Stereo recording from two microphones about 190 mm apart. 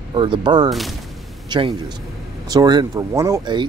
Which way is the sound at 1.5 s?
25° right (ahead or behind).